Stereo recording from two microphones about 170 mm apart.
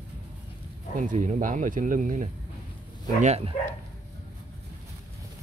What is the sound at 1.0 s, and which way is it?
Speech, 45° right (ahead or behind).